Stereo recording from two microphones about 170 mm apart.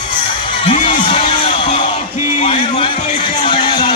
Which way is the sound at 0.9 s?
30° left (ahead or behind).